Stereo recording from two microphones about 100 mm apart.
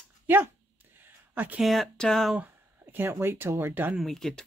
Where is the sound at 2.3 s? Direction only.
15° right (ahead or behind).